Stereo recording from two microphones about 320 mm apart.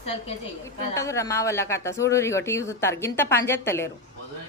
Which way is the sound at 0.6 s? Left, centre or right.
Centre.